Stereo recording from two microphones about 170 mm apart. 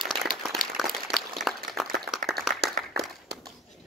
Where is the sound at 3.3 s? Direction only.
80° right.